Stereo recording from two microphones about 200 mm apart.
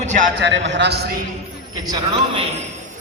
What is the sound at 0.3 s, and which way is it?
Speech, 60° right (ahead or behind).